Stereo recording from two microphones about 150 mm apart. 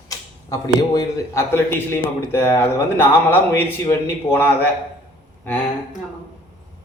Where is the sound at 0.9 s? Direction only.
15° left (ahead or behind).